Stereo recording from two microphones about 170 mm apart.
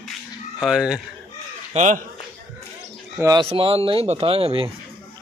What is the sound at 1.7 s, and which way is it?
Speech, 45° right (ahead or behind).